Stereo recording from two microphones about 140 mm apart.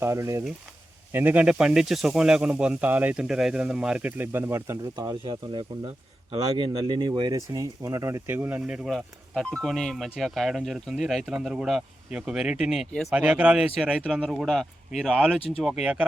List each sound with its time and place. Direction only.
0.0 s speech: 20° right (ahead or behind)
4.9 s speech: 30° right (ahead or behind); by 16.0 s 5° right (ahead or behind)